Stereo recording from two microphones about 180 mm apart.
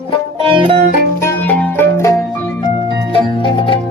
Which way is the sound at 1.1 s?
15° left (ahead or behind).